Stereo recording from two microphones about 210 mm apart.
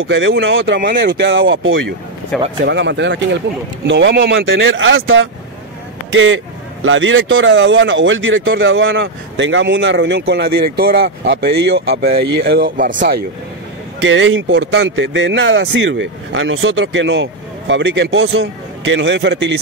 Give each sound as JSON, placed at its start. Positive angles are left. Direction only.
{"t": 0.0, "sound": "speech", "side_deg": -65}
{"t": 14.0, "sound": "speech", "side_deg": -65}